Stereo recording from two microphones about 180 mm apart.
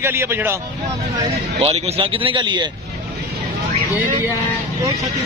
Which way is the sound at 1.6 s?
35° right (ahead or behind).